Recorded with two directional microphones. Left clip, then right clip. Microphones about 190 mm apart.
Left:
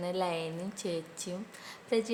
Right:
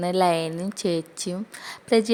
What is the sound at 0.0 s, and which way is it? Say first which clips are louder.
A woman's voice: right 11 dB; 40° right (ahead or behind).